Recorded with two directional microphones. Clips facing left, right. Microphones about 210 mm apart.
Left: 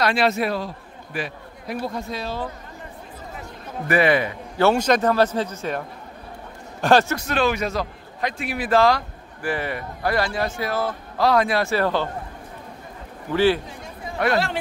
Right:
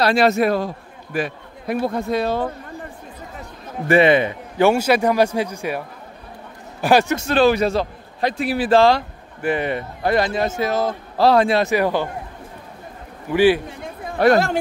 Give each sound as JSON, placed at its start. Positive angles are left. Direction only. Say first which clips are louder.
{"t": 0.0, "sound": "a man's voice", "louder": "right 5 dB", "side_deg": -45}
{"t": 3.8, "sound": "a man's voice", "louder": "right 5 dB", "side_deg": -25}
{"t": 7.2, "sound": "a man's voice", "louder": "right 6 dB", "side_deg": -30}
{"t": 13.3, "sound": "a man's voice", "louder": "right 4 dB", "side_deg": -15}
{"t": 14.1, "sound": "a man's voice", "louder": "right 6 dB", "side_deg": -40}